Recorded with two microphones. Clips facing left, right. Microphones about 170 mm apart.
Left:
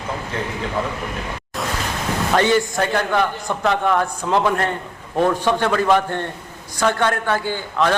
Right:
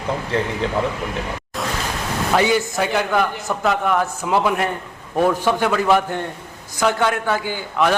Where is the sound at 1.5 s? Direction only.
Centre (ahead or behind).